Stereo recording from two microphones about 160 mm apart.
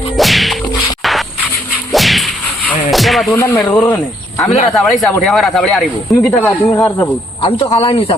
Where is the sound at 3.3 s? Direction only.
20° left (ahead or behind).